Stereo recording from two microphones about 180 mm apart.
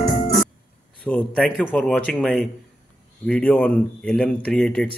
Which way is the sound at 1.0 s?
5° left (ahead or behind).